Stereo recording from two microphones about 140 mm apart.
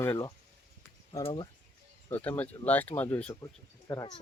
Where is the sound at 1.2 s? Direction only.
35° left (ahead or behind).